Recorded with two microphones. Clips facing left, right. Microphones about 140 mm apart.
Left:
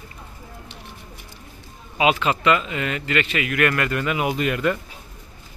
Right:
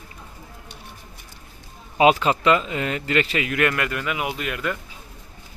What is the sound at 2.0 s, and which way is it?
A man's voice, 40° right (ahead or behind).